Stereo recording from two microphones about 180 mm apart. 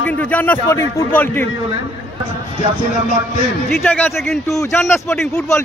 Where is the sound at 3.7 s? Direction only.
5° left (ahead or behind).